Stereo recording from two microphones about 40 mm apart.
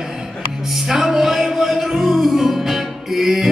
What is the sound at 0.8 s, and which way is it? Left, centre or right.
Music, centre.